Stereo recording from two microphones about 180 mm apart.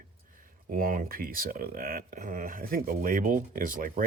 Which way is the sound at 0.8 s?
50° right (ahead or behind).